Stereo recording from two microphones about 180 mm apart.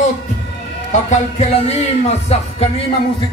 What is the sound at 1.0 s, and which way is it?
Music, 35° left (ahead or behind).